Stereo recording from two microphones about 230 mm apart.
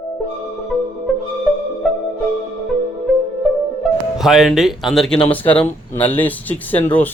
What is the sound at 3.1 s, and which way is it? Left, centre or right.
Music, centre.